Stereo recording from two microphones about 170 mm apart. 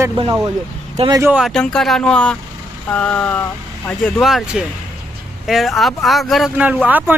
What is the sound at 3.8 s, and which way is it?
Speech, centre (ahead or behind).